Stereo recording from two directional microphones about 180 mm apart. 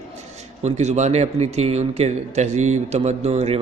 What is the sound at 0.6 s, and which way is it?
Speech, 40° right (ahead or behind).